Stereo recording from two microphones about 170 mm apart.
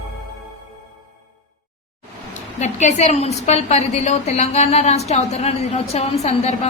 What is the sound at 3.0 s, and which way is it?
A woman's voice, 40° left (ahead or behind).